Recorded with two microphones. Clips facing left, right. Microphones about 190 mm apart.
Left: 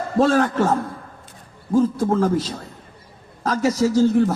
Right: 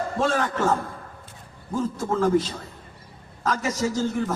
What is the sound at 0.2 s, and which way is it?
A man's voice, 40° left (ahead or behind).